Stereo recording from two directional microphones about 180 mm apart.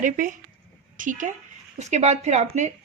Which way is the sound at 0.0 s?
50° right (ahead or behind).